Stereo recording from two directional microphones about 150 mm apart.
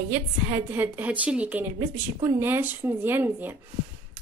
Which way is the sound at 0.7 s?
10° right (ahead or behind).